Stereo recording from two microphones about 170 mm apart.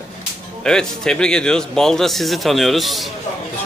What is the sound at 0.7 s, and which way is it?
A man's voice, 5° left (ahead or behind).